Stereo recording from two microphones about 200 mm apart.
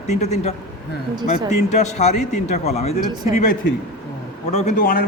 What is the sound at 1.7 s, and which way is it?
A man's voice, 35° left (ahead or behind).